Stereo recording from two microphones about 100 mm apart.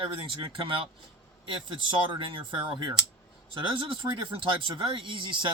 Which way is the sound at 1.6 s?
55° right (ahead or behind).